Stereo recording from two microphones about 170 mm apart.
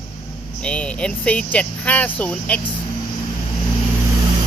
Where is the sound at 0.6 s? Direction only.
5° left (ahead or behind).